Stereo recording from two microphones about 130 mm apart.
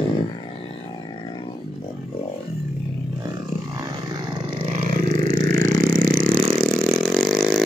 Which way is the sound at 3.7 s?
30° right (ahead or behind).